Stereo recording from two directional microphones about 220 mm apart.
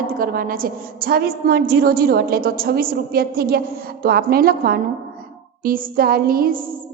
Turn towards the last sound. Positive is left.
turn(degrees=-40)  # may be behind; listen again after turning